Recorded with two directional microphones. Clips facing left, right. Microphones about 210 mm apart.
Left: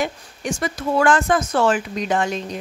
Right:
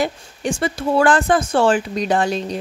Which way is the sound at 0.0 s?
30° right (ahead or behind).